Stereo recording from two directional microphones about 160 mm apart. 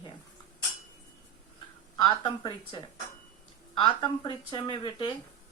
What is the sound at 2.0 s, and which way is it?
Speech, 25° left (ahead or behind).